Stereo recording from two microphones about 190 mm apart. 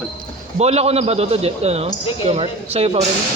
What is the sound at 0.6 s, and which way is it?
A man's voice, 35° right (ahead or behind).